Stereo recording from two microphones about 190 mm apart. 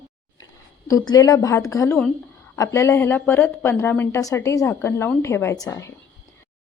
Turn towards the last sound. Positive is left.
turn(degrees=15)  # may be behind; listen again after turning